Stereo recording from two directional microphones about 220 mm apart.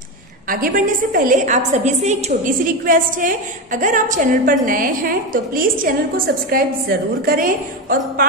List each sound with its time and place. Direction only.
0.5 s a woman's voice: 40° right (ahead or behind)